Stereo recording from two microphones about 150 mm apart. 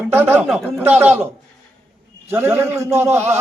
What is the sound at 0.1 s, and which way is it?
Speech, 15° right (ahead or behind).